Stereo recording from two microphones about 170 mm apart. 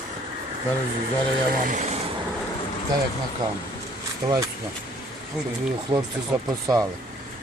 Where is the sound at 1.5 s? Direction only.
50° right (ahead or behind).